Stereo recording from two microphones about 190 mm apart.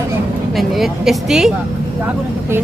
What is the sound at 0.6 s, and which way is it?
Speech, centre (ahead or behind).